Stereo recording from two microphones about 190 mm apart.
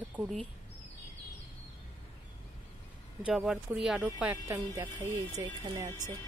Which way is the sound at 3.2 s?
Centre (ahead or behind).